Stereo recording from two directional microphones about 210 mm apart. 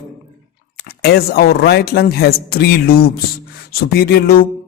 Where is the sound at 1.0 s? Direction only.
50° left (ahead or behind).